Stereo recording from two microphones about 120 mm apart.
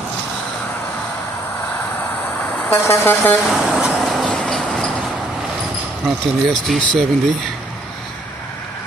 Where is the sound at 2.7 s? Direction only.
20° left (ahead or behind).